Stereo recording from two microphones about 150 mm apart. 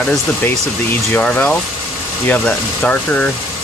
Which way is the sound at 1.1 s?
10° left (ahead or behind).